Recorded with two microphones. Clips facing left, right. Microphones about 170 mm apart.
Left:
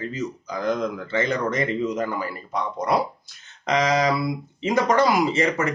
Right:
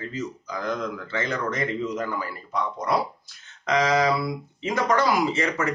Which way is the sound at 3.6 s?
20° left (ahead or behind).